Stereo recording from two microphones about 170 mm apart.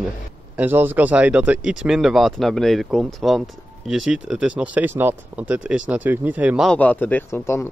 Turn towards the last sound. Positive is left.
turn(degrees=15)  # may be behind; listen again after turning